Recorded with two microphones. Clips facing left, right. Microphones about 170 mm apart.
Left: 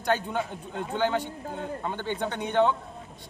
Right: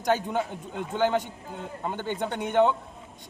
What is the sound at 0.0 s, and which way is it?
A man's voice, 10° right (ahead or behind).